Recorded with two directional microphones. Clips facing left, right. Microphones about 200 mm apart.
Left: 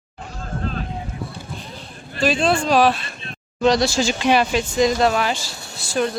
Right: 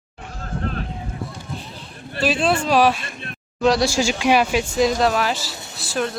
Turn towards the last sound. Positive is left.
turn(degrees=0)  # may be behind; listen again after turning